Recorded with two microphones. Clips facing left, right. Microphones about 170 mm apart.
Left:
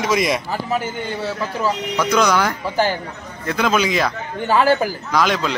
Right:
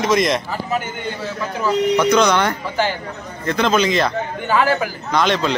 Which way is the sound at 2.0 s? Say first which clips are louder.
Left 1 dB; 5° left (ahead or behind).